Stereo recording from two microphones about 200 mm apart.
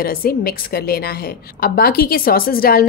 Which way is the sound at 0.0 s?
45° left (ahead or behind).